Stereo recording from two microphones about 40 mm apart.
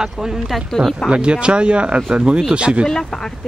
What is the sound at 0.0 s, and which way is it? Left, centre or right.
Speech, centre.